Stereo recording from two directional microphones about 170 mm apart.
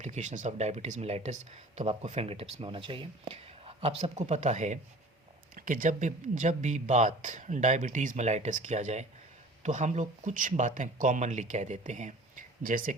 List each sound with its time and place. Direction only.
0.0 s speech: 45° right (ahead or behind)